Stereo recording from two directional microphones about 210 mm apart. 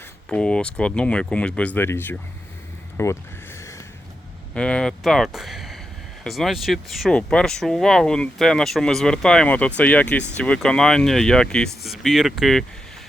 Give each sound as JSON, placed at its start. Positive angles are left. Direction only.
{"t": 0.3, "sound": "speech", "side_deg": 5}
{"t": 3.0, "sound": "a sound", "side_deg": 15}
{"t": 4.5, "sound": "speech", "side_deg": 5}